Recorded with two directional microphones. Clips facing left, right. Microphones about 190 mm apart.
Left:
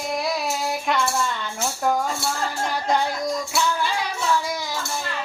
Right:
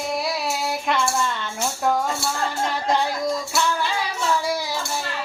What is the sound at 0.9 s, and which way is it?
Music, centre (ahead or behind).